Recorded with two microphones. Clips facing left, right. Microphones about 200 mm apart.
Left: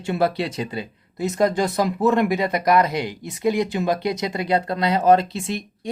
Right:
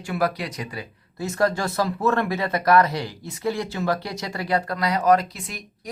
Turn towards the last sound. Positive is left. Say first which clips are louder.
# left 9 dB
turn(degrees=25)  # may be behind; listen again after turning